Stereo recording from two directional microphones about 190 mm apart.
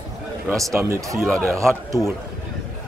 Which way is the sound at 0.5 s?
15° right (ahead or behind).